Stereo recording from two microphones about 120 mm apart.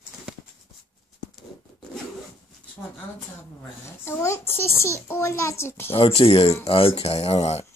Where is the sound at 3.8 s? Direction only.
25° left (ahead or behind).